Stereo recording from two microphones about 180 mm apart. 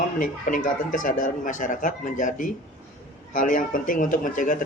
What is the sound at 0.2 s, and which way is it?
Speech, 45° left (ahead or behind).